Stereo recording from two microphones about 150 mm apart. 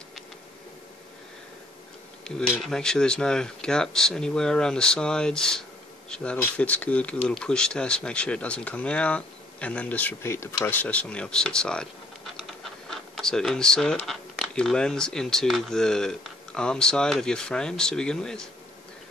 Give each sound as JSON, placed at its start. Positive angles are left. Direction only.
{"t": 2.2, "sound": "speech", "side_deg": 5}
{"t": 12.9, "sound": "speech", "side_deg": 5}